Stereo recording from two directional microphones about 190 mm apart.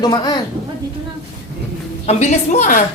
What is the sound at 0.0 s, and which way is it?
Speech, 20° left (ahead or behind).